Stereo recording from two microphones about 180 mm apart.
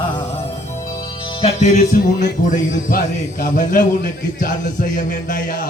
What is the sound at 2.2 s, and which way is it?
A man's voice, 50° left (ahead or behind).